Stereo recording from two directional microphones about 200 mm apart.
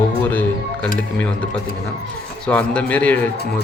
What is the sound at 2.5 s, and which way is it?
Speech, 5° left (ahead or behind).